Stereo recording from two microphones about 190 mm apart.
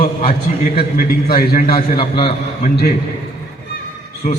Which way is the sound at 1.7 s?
25° left (ahead or behind).